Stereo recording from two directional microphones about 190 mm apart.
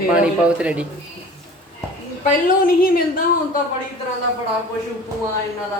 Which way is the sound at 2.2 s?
50° left (ahead or behind).